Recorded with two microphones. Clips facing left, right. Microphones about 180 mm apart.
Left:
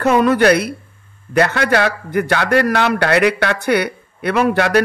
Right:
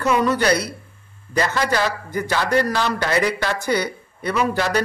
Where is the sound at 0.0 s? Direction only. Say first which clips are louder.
Left 6 dB; 55° left (ahead or behind).